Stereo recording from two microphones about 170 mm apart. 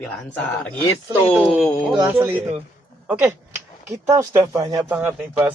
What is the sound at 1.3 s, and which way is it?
Speech, 5° right (ahead or behind).